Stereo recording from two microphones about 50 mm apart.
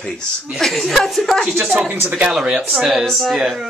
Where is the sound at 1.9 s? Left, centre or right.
Right.